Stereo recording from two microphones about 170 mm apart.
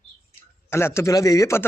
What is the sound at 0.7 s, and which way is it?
Speech, 15° left (ahead or behind).